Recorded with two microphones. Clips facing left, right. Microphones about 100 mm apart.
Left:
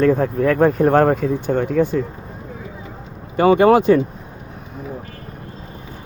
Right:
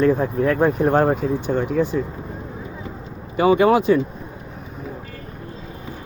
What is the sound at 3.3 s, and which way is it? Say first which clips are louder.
Speech: left 3 dB; 45° left (ahead or behind).